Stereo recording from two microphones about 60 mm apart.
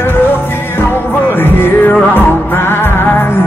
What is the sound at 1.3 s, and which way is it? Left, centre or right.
Music, left.